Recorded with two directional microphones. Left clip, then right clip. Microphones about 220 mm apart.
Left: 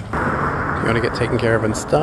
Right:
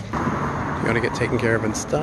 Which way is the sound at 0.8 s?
10° left (ahead or behind).